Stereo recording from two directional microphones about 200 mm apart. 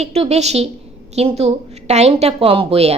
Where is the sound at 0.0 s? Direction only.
30° right (ahead or behind).